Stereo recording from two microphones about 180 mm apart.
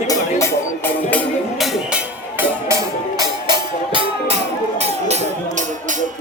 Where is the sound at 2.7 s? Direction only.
20° right (ahead or behind).